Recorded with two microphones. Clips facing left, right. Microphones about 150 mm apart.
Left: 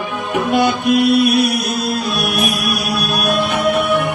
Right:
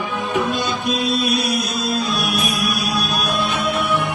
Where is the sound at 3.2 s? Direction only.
65° left (ahead or behind).